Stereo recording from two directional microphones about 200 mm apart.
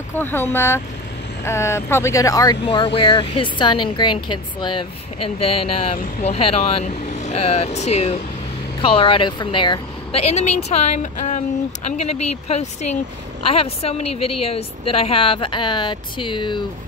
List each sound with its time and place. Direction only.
0.2 s a woman's voice: 10° left (ahead or behind)